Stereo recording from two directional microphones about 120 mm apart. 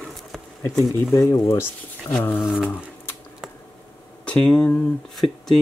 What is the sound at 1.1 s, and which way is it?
Speech, 35° left (ahead or behind).